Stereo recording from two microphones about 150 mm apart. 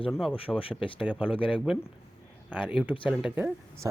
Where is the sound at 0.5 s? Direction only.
35° left (ahead or behind).